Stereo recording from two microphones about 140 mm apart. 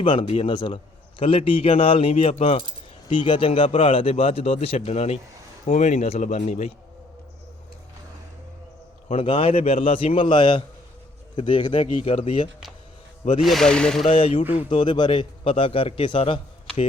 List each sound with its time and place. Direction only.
0.0 s a man's voice: 35° left (ahead or behind); by 6.7 s 55° left (ahead or behind)
9.0 s a man's voice: 40° left (ahead or behind)
13.4 s speech: centre (ahead or behind)
14.0 s a man's voice: 40° left (ahead or behind)